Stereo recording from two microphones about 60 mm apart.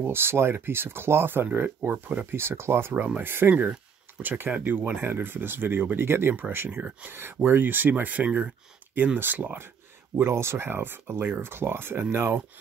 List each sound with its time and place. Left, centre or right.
0.0 s speech: right
10.1 s speech: right